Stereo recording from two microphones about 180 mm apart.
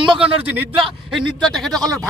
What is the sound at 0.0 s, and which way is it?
Speech, 30° right (ahead or behind).